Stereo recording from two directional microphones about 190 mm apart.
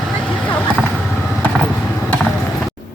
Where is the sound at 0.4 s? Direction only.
5° left (ahead or behind).